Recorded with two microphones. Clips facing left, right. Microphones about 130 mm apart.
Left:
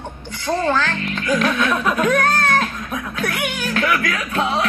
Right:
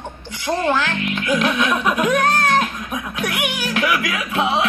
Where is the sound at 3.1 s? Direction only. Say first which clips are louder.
Even; 10° right (ahead or behind).